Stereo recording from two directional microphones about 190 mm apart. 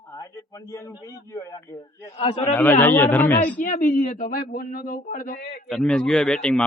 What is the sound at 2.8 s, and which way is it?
Speech, 10° left (ahead or behind).